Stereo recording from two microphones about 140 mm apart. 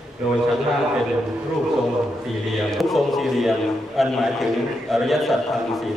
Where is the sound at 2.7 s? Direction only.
Centre (ahead or behind).